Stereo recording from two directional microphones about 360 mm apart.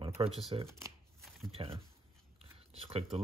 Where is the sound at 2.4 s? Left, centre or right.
Centre.